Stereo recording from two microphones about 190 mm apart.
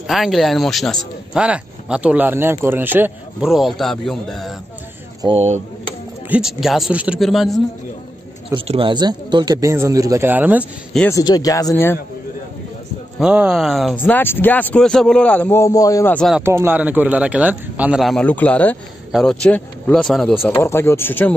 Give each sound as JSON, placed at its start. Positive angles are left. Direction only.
{"t": 0.0, "sound": "speech", "side_deg": 0}
{"t": 5.2, "sound": "speech", "side_deg": -30}
{"t": 6.2, "sound": "speech", "side_deg": -5}
{"t": 8.5, "sound": "speech", "side_deg": -30}
{"t": 11.1, "sound": "speech", "side_deg": 20}
{"t": 13.2, "sound": "speech", "side_deg": -5}
{"t": 16.3, "sound": "speech", "side_deg": -10}
{"t": 20.5, "sound": "speech", "side_deg": 15}